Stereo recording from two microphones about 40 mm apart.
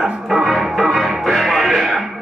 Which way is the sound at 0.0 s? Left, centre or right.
Centre.